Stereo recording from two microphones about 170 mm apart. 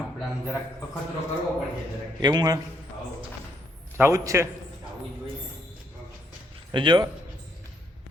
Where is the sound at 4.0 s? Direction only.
15° right (ahead or behind).